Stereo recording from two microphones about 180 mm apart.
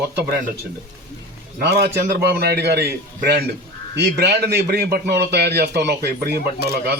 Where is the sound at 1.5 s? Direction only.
65° right (ahead or behind).